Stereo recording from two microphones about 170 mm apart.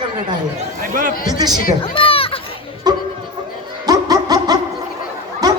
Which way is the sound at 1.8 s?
35° left (ahead or behind).